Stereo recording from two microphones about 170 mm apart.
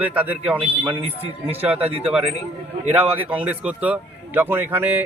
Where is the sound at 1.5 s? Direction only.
10° right (ahead or behind).